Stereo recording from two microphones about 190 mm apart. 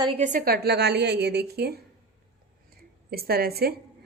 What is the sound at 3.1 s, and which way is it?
Speech, 55° right (ahead or behind).